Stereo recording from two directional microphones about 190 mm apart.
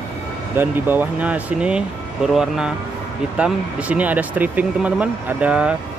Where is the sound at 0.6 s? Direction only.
10° right (ahead or behind).